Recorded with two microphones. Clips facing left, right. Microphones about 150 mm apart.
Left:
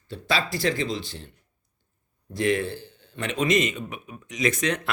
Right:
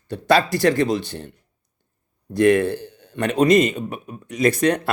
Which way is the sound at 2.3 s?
60° right (ahead or behind).